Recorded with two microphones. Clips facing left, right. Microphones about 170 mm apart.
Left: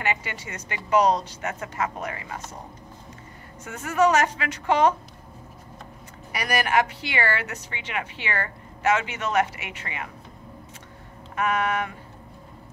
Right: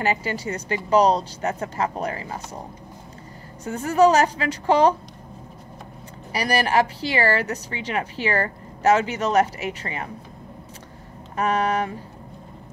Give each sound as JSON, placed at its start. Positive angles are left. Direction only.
{"t": 0.0, "sound": "a woman's voice", "side_deg": -35}
{"t": 3.6, "sound": "a woman's voice", "side_deg": -35}
{"t": 6.3, "sound": "a woman's voice", "side_deg": -35}
{"t": 11.3, "sound": "a woman's voice", "side_deg": -35}